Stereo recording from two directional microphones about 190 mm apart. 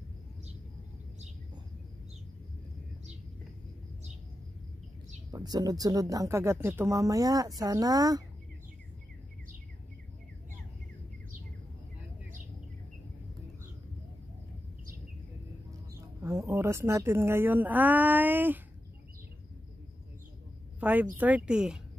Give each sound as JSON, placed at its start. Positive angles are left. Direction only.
{"t": 5.3, "sound": "speech", "side_deg": -20}
{"t": 16.2, "sound": "speech", "side_deg": -15}
{"t": 20.8, "sound": "speech", "side_deg": -10}